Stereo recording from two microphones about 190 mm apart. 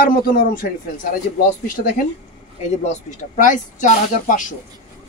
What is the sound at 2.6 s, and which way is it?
Speech, 40° left (ahead or behind).